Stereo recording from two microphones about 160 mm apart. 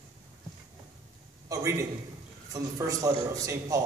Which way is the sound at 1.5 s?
20° right (ahead or behind).